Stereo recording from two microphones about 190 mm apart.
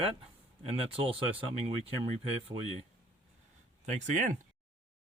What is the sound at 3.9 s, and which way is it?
Speech, 40° right (ahead or behind).